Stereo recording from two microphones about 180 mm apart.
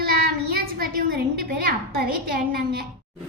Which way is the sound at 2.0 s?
55° right (ahead or behind).